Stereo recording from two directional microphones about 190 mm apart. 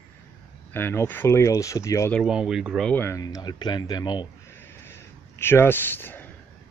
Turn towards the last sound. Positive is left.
turn(degrees=10)  # may be behind; listen again after turning